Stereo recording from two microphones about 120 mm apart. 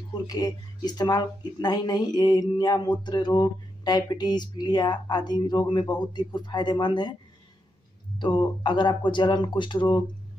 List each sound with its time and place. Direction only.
0.1 s speech: 35° left (ahead or behind)
8.2 s speech: 40° left (ahead or behind)